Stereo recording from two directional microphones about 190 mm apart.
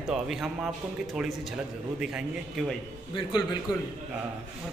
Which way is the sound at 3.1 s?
20° left (ahead or behind).